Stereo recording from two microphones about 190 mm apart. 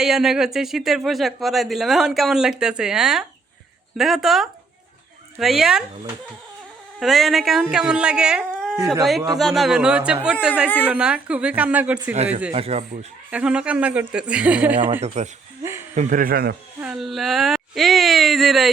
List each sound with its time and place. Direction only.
0.0 s speech: centre (ahead or behind)
7.0 s speech: centre (ahead or behind)
12.1 s a man's voice: 35° right (ahead or behind)
13.3 s speech: 5° right (ahead or behind)
15.0 s a man's voice: 35° right (ahead or behind)
15.6 s speech: 15° right (ahead or behind)
16.0 s a man's voice: 45° right (ahead or behind)
16.8 s speech: centre (ahead or behind)